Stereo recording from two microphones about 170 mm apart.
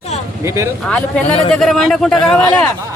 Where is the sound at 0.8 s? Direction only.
10° left (ahead or behind).